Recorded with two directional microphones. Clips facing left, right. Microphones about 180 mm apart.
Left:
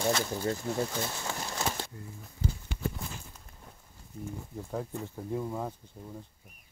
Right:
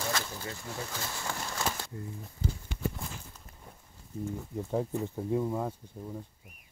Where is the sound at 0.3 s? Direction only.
45° left (ahead or behind).